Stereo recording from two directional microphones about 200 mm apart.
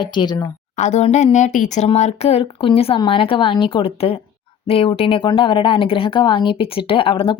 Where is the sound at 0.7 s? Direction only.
35° left (ahead or behind).